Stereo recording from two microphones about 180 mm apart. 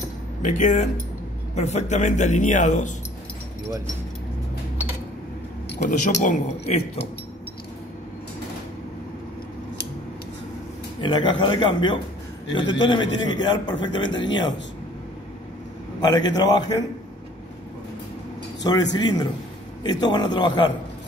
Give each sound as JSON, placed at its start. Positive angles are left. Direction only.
{"t": 0.4, "sound": "a man's voice", "side_deg": 40}
{"t": 5.9, "sound": "a man's voice", "side_deg": 45}
{"t": 11.0, "sound": "a man's voice", "side_deg": 25}
{"t": 16.0, "sound": "a man's voice", "side_deg": 25}
{"t": 18.6, "sound": "a man's voice", "side_deg": 20}